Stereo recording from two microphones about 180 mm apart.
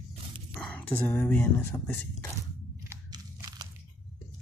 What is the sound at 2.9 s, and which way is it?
Crunch, 20° right (ahead or behind).